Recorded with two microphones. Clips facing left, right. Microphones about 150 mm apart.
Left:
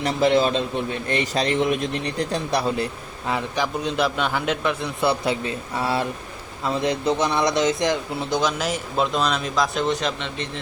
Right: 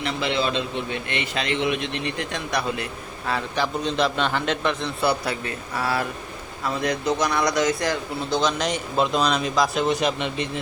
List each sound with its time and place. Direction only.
0.0 s a man's voice: 45° left (ahead or behind)
3.2 s a man's voice: 15° left (ahead or behind)
4.9 s speech: 20° left (ahead or behind); by 10.6 s 10° right (ahead or behind)